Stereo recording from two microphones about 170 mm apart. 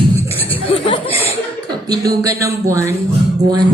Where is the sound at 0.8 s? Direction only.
30° left (ahead or behind).